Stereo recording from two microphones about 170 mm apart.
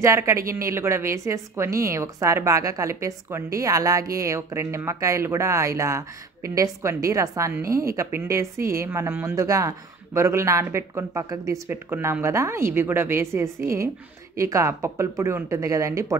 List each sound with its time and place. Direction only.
0.0 s speech: 15° right (ahead or behind)